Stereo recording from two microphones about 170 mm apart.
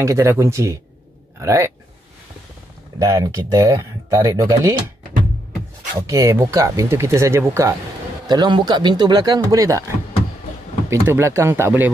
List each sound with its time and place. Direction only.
0.0 s speech: 15° right (ahead or behind)
3.0 s speech: 20° right (ahead or behind)
5.9 s speech: 20° right (ahead or behind)